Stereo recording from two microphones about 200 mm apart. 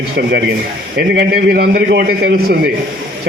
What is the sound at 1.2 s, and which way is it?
A man's voice, 50° right (ahead or behind).